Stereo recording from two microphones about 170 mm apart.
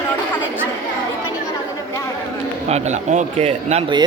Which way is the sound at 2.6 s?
40° right (ahead or behind).